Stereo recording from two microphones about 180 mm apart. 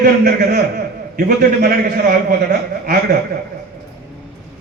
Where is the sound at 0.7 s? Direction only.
60° right (ahead or behind).